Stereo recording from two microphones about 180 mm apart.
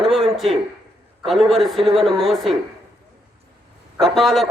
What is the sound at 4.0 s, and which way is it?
Speech, centre (ahead or behind).